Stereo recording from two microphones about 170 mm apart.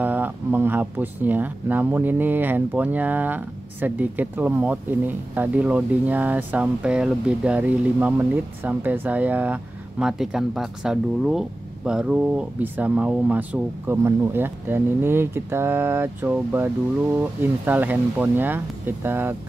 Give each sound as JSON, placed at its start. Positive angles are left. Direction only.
{"t": 0.0, "sound": "speech", "side_deg": -10}